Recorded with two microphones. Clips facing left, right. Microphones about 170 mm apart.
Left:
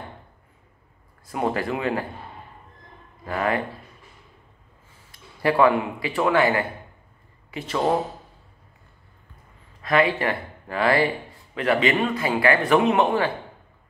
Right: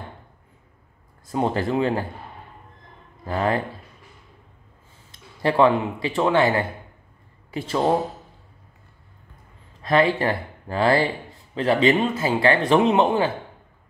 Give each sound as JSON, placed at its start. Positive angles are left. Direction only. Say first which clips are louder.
{"t": 1.3, "sound": "a man's voice", "louder": "right 3 dB", "side_deg": -30}
{"t": 3.3, "sound": "a man's voice", "louder": "right 1 dB", "side_deg": -30}
{"t": 5.4, "sound": "a man's voice", "louder": "right 1 dB", "side_deg": -25}
{"t": 9.8, "sound": "a man's voice", "louder": "right 2 dB", "side_deg": -30}